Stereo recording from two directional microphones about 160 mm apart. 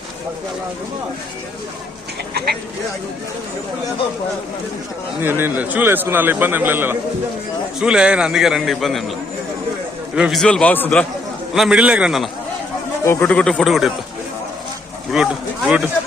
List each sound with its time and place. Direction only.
5.2 s a man's voice: 15° right (ahead or behind)
10.2 s a man's voice: centre (ahead or behind)
11.5 s a man's voice: 5° right (ahead or behind)
13.1 s a man's voice: 15° left (ahead or behind)
15.1 s a man's voice: 5° right (ahead or behind)